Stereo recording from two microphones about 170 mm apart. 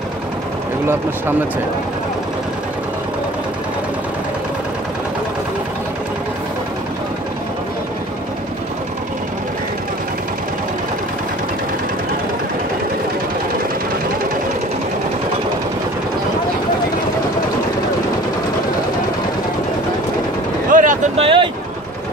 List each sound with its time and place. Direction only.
20.7 s boat: 50° right (ahead or behind)
21.2 s vehicle: 30° right (ahead or behind)